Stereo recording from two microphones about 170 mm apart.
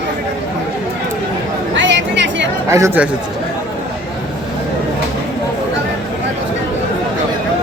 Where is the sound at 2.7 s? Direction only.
15° right (ahead or behind).